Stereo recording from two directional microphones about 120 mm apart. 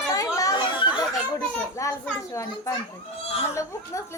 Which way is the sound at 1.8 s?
25° left (ahead or behind).